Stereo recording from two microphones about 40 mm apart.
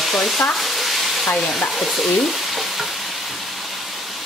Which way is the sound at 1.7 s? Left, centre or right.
Centre.